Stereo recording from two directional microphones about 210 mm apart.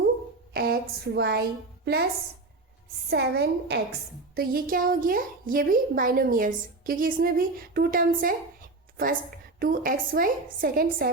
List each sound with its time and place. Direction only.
0.5 s a woman's voice: 50° right (ahead or behind)
3.1 s a woman's voice: 50° right (ahead or behind)
9.6 s a woman's voice: 40° right (ahead or behind)